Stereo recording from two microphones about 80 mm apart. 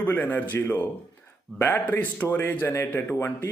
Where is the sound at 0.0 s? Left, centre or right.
Left.